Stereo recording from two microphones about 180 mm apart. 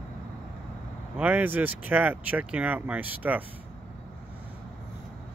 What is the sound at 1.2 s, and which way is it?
Speech, 10° right (ahead or behind).